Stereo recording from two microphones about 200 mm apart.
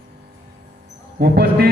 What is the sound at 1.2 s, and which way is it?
Speech, 50° right (ahead or behind).